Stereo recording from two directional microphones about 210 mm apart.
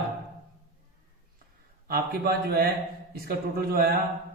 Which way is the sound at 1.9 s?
45° right (ahead or behind).